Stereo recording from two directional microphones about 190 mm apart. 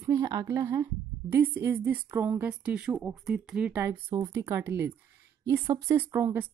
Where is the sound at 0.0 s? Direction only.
15° right (ahead or behind).